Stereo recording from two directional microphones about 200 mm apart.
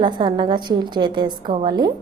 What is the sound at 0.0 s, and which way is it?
A woman's voice, 25° right (ahead or behind).